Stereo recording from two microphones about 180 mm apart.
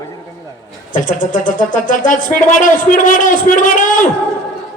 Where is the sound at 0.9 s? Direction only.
45° left (ahead or behind).